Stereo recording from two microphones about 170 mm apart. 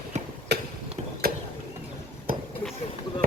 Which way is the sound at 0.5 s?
80° right.